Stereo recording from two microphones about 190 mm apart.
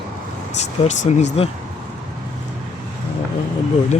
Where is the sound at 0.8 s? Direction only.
35° left (ahead or behind).